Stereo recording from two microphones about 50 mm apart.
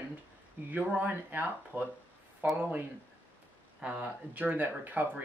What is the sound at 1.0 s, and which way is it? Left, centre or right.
Speech, right.